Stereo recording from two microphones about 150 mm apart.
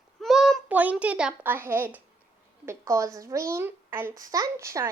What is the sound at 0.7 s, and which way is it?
Speech, 10° right (ahead or behind).